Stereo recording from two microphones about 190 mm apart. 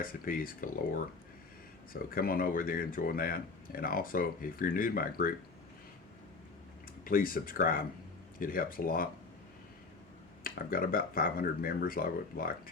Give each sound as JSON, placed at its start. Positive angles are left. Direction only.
{"t": 0.0, "sound": "speech", "side_deg": 50}
{"t": 7.0, "sound": "speech", "side_deg": 50}
{"t": 10.4, "sound": "speech", "side_deg": 50}